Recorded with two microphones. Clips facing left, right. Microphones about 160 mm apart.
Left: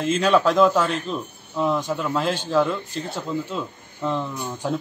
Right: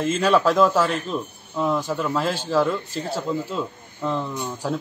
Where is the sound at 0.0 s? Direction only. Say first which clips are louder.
Even; centre (ahead or behind).